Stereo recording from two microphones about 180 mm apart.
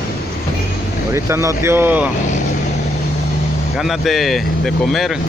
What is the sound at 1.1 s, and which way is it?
Speech, 15° right (ahead or behind).